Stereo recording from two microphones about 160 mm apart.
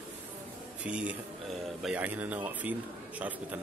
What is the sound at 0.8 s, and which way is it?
Speech, 5° right (ahead or behind).